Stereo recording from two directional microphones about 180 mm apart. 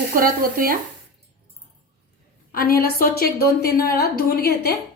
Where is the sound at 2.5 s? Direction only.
55° left (ahead or behind).